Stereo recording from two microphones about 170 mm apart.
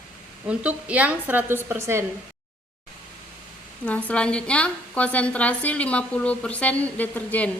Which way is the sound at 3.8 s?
10° left (ahead or behind).